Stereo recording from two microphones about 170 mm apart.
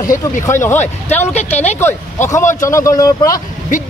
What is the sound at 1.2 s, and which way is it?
Speech, 40° left (ahead or behind).